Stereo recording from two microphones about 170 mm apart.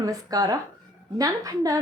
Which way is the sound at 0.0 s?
20° right (ahead or behind).